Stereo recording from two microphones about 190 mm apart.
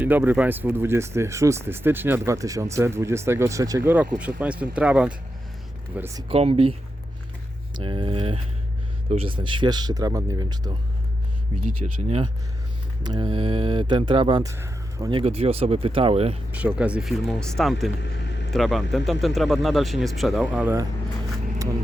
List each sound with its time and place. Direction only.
0.0 s speech: 10° right (ahead or behind)
6.2 s speech: 30° right (ahead or behind)
7.8 s speech: 25° right (ahead or behind)
11.8 s speech: 35° right (ahead or behind)
13.0 s speech: 25° right (ahead or behind)
14.5 s speech: 15° right (ahead or behind)
15.2 s speech: 30° right (ahead or behind)
16.5 s speech: 10° right (ahead or behind)
18.0 s vehicle: 65° left (ahead or behind)
18.5 s speech: centre (ahead or behind)